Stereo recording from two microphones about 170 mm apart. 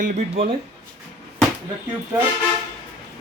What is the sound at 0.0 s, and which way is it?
Speech, 40° right (ahead or behind).